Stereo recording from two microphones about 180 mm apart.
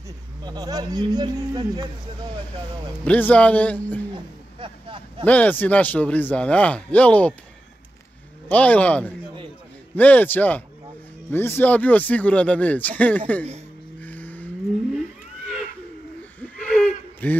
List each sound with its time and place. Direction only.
0.4 s speech: 20° right (ahead or behind)
3.0 s speech: 10° left (ahead or behind)
4.1 s vehicle: 30° right (ahead or behind)
5.2 s speech: 10° left (ahead or behind)
8.5 s speech: 10° left (ahead or behind)
14.0 s a sound: 10° left (ahead or behind)
16.3 s a sound: 5° left (ahead or behind)